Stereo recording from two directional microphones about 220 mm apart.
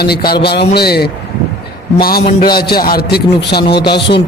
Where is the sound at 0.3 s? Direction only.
45° left (ahead or behind).